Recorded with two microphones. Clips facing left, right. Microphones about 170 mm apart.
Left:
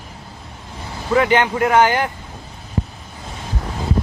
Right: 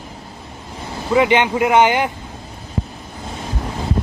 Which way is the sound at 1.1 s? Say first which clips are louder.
Right 1 dB; 20° right (ahead or behind).